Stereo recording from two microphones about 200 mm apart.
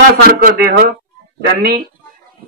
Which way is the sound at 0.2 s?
45° right (ahead or behind).